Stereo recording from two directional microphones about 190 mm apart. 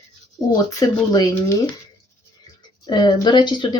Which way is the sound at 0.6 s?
20° left (ahead or behind).